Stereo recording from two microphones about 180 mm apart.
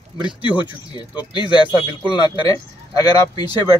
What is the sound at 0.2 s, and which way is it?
Speech, 25° right (ahead or behind).